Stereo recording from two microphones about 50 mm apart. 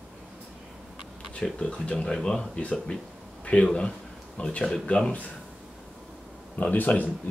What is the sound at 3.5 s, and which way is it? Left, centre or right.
Speech, left.